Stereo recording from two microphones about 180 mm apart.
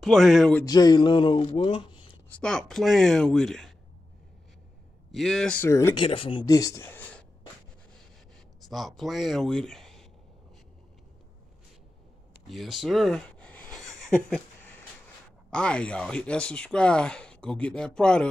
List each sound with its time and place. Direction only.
0.0 s speech: centre (ahead or behind)
0.7 s speech: 20° left (ahead or behind)
2.2 s speech: 5° left (ahead or behind)
5.1 s speech: centre (ahead or behind)
5.9 s speech: 30° left (ahead or behind); by 7.2 s 10° left (ahead or behind)
8.5 s speech: centre (ahead or behind)
12.4 s a sound: centre (ahead or behind)
15.5 s speech: 5° left (ahead or behind)